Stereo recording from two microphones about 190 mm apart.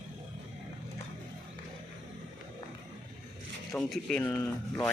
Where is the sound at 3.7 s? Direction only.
5° left (ahead or behind).